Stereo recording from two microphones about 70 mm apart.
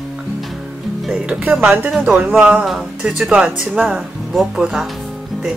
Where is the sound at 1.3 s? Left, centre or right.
Right.